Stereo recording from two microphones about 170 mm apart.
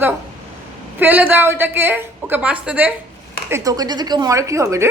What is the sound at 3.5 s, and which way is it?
Speech, 20° right (ahead or behind).